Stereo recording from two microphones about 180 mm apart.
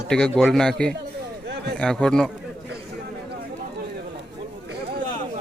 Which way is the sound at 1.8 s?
5° left (ahead or behind).